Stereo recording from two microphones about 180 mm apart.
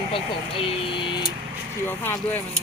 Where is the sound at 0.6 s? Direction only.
25° left (ahead or behind).